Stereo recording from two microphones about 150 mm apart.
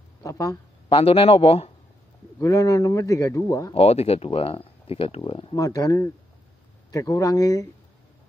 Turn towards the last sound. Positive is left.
turn(degrees=25)  # may be behind; listen again after turning